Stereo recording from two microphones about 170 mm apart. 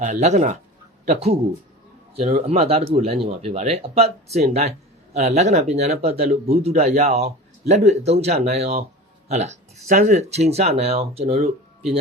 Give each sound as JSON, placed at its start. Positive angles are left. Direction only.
{"t": 0.0, "sound": "speech", "side_deg": -40}